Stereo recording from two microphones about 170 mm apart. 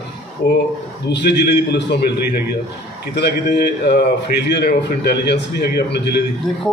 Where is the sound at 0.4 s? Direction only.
65° left (ahead or behind).